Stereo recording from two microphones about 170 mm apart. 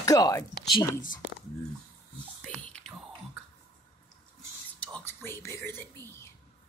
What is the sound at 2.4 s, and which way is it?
Whispering, 5° left (ahead or behind).